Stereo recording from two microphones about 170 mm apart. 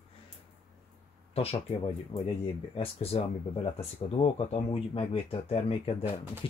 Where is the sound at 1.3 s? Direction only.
35° left (ahead or behind).